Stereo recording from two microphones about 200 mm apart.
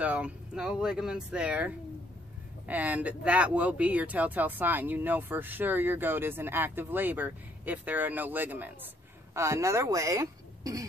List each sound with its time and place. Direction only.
0.0 s speech: 5° right (ahead or behind)
2.7 s speech: 10° right (ahead or behind)